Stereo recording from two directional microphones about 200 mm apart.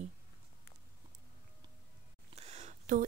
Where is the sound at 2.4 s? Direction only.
35° right (ahead or behind).